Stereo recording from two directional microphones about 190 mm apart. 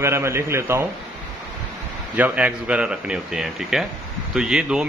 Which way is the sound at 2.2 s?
10° right (ahead or behind).